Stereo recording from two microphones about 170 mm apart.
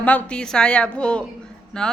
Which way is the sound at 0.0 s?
10° left (ahead or behind).